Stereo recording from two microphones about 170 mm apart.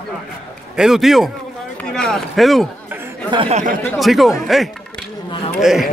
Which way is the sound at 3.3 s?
30° right (ahead or behind).